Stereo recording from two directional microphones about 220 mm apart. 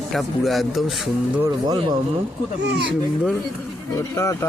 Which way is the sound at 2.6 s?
50° right (ahead or behind).